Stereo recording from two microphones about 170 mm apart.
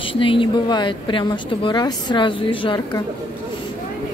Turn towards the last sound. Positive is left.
turn(degrees=30)  # may be behind; listen again after turning